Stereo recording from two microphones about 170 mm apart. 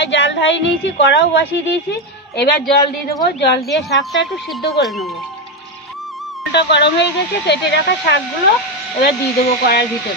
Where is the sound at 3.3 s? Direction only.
90° left.